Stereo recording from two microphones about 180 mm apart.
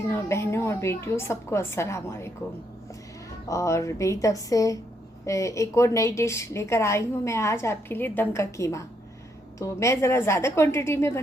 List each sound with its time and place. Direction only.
0.1 s a woman's voice: 15° left (ahead or behind)
3.5 s a woman's voice: 15° left (ahead or behind)